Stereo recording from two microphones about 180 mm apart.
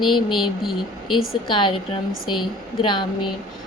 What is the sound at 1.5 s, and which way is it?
Speech, 25° left (ahead or behind).